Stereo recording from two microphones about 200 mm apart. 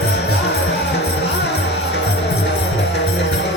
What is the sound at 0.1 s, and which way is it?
Music, 55° left (ahead or behind).